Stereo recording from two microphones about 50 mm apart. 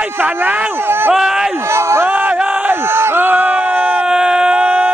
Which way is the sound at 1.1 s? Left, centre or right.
Centre.